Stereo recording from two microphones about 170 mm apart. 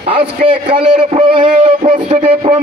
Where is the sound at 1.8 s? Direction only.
25° right (ahead or behind).